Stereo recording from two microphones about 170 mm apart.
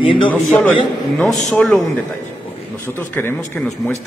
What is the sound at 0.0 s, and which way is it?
Speech, 30° left (ahead or behind).